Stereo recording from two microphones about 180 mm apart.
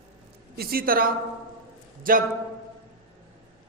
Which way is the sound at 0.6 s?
55° right (ahead or behind).